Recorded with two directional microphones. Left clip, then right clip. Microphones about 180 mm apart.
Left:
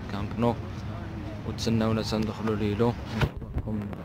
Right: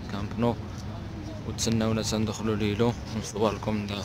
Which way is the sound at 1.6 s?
5° left (ahead or behind).